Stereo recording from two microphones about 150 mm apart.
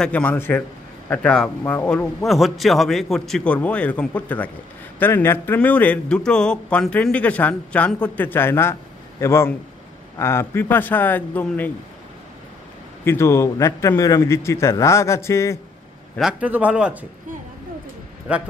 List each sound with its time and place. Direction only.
0.0 s a man's voice: 10° left (ahead or behind)
2.2 s a man's voice: centre (ahead or behind)
13.0 s a man's voice: 15° left (ahead or behind)
16.2 s speech: 5° right (ahead or behind)
18.3 s speech: 10° right (ahead or behind)